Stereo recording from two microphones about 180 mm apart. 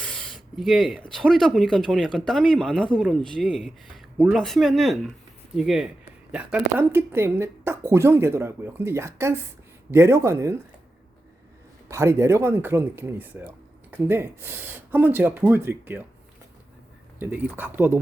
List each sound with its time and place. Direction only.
0.0 s speech: 5° left (ahead or behind); by 10.6 s 15° right (ahead or behind)
11.9 s speech: 15° right (ahead or behind)
17.2 s speech: 10° right (ahead or behind)